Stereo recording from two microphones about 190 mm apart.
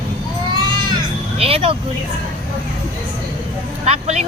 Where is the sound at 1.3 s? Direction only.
30° right (ahead or behind).